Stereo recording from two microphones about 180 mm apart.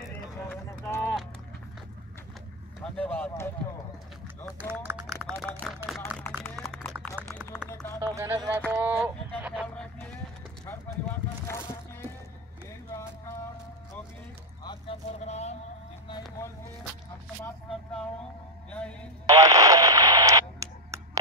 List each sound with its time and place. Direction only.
0.5 s clip-clop: 10° left (ahead or behind)
2.8 s speech: 10° left (ahead or behind)
4.5 s speech: 10° right (ahead or behind)
5.4 s speech: centre (ahead or behind)
6.0 s speech: 10° left (ahead or behind)
6.6 s run: centre (ahead or behind)
7.7 s a sound: 15° left (ahead or behind)
8.0 s speech: 15° right (ahead or behind)
14.6 s a sound: 25° left (ahead or behind)
15.2 s a sound: 35° left (ahead or behind)
16.1 s vehicle: 20° left (ahead or behind)
18.7 s speech: 5° left (ahead or behind)
19.2 s radio: 20° right (ahead or behind)